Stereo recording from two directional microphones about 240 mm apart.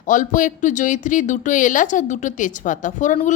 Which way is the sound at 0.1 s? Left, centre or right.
Left.